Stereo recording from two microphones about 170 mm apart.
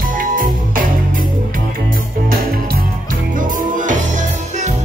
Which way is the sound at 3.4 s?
50° right (ahead or behind).